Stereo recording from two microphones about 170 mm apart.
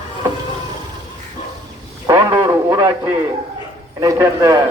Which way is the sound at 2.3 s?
25° right (ahead or behind).